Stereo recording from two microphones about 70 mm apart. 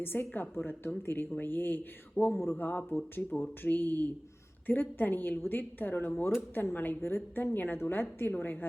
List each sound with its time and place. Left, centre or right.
0.0 s a woman's voice: left